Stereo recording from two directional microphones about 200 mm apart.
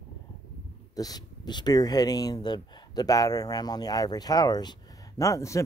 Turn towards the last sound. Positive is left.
turn(degrees=15)  # may be behind; listen again after turning